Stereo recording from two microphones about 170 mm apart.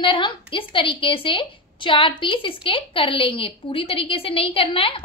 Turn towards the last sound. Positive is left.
turn(degrees=30)  # may be behind; listen again after turning